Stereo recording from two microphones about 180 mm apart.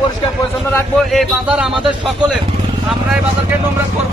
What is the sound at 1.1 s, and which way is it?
A man's voice, 5° right (ahead or behind).